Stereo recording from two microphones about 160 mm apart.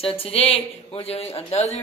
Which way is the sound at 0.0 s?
35° left (ahead or behind).